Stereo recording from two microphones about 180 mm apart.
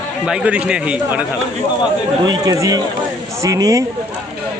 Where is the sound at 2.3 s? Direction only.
20° right (ahead or behind).